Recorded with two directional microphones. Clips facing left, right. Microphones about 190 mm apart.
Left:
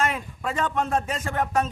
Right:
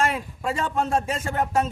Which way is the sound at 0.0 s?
30° right (ahead or behind).